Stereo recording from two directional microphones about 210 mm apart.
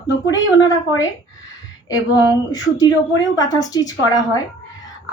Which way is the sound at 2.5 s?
20° left (ahead or behind).